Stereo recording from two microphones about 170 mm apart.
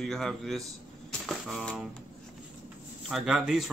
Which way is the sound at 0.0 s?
Centre (ahead or behind).